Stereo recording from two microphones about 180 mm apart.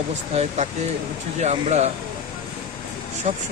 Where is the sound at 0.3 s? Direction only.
40° right (ahead or behind).